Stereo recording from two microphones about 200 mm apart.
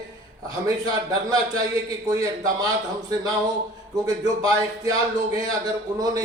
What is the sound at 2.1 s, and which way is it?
Speech, 20° right (ahead or behind).